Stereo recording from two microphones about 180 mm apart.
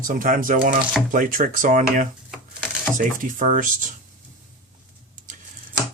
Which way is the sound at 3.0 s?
45° right (ahead or behind).